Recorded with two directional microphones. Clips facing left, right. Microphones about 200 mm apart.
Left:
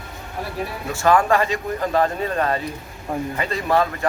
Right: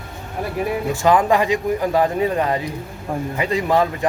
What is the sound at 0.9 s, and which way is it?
Speech, 15° right (ahead or behind).